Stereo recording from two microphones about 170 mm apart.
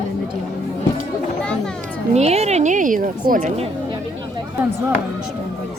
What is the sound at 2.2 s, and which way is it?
A woman's voice, 40° right (ahead or behind).